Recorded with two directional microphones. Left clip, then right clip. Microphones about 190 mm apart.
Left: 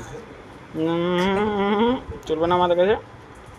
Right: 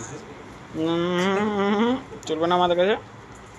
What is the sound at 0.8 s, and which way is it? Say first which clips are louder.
Speech: left 1 dB; 10° left (ahead or behind).